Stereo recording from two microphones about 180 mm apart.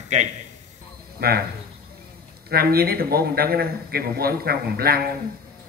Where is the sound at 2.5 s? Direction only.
60° right (ahead or behind).